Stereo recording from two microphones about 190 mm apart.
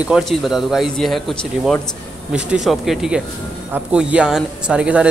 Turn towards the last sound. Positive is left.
turn(degrees=-5)  # may be behind; listen again after turning